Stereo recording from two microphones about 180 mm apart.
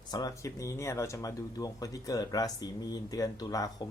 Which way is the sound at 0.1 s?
20° left (ahead or behind).